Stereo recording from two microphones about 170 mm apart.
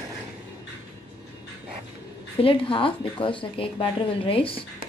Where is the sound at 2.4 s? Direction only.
30° left (ahead or behind).